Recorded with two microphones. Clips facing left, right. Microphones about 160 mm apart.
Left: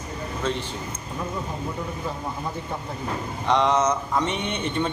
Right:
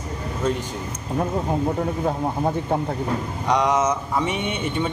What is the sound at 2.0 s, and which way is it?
Speech, 55° right (ahead or behind).